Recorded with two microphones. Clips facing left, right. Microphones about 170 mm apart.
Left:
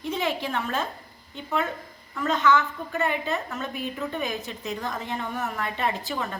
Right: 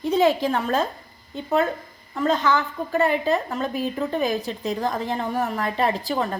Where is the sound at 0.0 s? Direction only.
35° right (ahead or behind).